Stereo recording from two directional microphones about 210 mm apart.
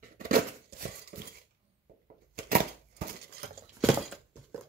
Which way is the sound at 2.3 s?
45° right (ahead or behind).